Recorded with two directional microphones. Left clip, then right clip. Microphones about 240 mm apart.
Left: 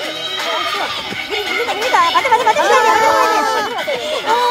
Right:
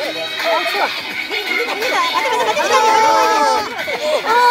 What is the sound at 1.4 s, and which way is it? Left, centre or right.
Speech, left.